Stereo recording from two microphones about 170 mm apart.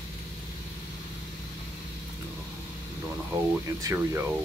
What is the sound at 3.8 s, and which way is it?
Speech, 15° right (ahead or behind).